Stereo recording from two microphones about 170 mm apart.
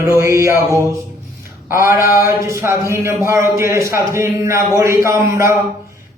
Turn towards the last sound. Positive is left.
turn(degrees=-15)  # may be behind; listen again after turning